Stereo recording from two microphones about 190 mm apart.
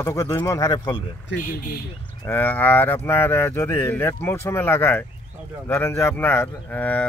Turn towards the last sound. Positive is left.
turn(degrees=10)  # may be behind; listen again after turning